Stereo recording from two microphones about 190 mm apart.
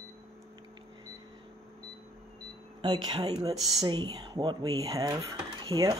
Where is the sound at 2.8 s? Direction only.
25° right (ahead or behind).